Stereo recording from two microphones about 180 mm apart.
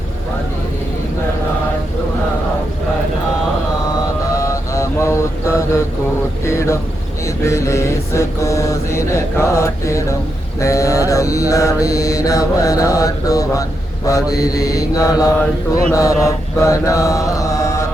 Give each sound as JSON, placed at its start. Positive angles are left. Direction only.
{"t": 4.4, "sound": "mantra", "side_deg": 15}
{"t": 6.4, "sound": "a sound", "side_deg": 15}
{"t": 7.3, "sound": "mantra", "side_deg": 15}